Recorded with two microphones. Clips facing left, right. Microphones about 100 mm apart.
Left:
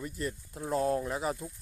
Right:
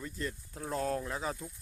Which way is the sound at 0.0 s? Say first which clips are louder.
Left 3 dB; 15° left (ahead or behind).